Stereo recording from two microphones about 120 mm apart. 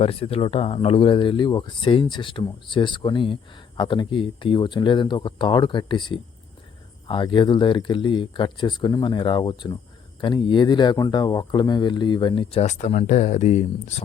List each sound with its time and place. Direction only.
0.0 s speech: 55° left (ahead or behind); by 14.0 s 75° left (ahead or behind)